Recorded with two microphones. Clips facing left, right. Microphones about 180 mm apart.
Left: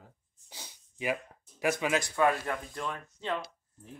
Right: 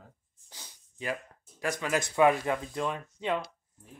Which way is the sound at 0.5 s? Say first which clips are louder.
Left 3 dB; 10° left (ahead or behind).